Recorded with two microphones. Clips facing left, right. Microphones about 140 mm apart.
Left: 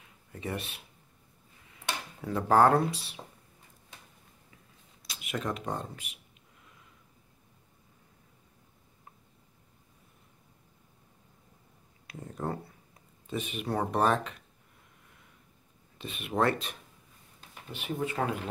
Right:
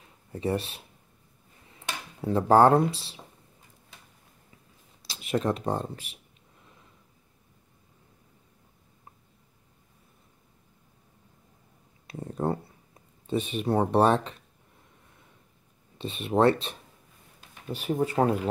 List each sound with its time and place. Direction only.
0.3 s speech: 35° right (ahead or behind)
2.2 s speech: 30° right (ahead or behind)
5.0 s speech: 30° right (ahead or behind)
12.1 s a sound: 35° right (ahead or behind)
13.3 s speech: 30° right (ahead or behind)
16.0 s speech: 30° right (ahead or behind)
17.6 s speech: 40° right (ahead or behind)